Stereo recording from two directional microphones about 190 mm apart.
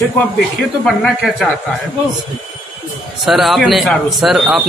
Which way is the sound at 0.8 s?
Centre (ahead or behind).